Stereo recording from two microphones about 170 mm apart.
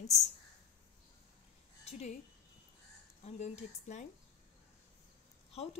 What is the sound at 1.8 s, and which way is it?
Speech, 40° left (ahead or behind).